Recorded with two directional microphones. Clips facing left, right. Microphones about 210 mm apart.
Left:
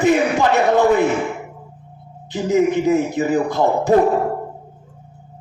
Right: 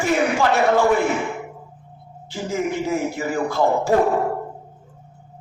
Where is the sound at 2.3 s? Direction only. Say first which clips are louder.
Left 8 dB; 20° left (ahead or behind).